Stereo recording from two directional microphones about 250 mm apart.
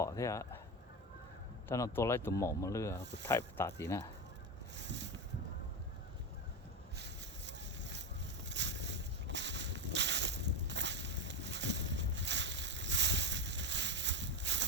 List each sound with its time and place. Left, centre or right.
0.0 s speech: centre
1.6 s speech: centre
4.8 s boat: right
6.9 s boat: right
8.4 s a sound: right